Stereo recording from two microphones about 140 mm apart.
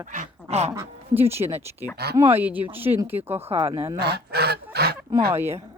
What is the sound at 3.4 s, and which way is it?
Speech, 45° right (ahead or behind).